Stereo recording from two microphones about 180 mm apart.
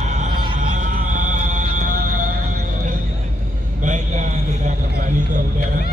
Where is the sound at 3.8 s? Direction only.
45° right (ahead or behind).